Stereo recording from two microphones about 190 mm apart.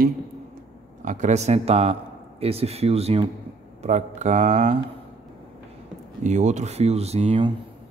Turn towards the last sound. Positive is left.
turn(degrees=-30)  # may be behind; listen again after turning